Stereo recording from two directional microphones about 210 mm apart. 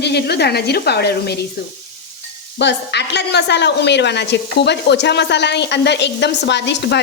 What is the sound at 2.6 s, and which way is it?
A woman's voice, 55° left (ahead or behind).